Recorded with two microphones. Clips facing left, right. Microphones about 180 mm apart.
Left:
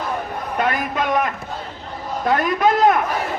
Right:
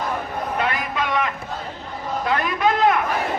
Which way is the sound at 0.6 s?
45° left (ahead or behind).